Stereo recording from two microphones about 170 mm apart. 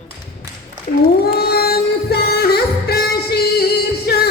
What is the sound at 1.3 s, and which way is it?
Music, 65° left (ahead or behind).